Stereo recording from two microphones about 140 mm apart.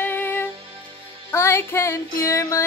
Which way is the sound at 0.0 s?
15° left (ahead or behind).